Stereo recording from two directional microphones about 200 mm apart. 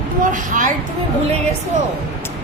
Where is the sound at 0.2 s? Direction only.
40° right (ahead or behind).